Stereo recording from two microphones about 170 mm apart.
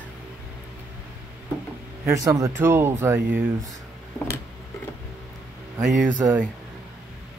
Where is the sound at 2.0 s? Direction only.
20° right (ahead or behind).